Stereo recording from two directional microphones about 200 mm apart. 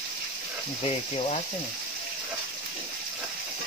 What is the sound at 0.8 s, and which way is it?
Speech, 30° left (ahead or behind).